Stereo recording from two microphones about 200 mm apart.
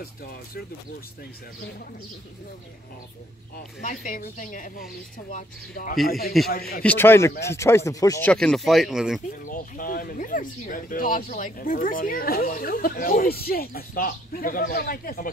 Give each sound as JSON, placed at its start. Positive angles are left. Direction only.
{"t": 0.0, "sound": "speech", "side_deg": 50}
{"t": 3.5, "sound": "speech", "side_deg": 40}
{"t": 6.8, "sound": "speech", "side_deg": 10}
{"t": 8.3, "sound": "speech", "side_deg": 5}
{"t": 9.4, "sound": "speech", "side_deg": 45}